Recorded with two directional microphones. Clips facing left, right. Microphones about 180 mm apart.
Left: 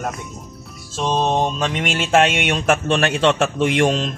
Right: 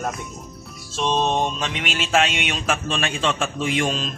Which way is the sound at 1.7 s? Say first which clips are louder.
Left 5 dB; 55° left (ahead or behind).